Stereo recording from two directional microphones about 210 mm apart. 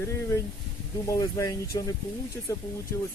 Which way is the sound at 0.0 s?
15° left (ahead or behind).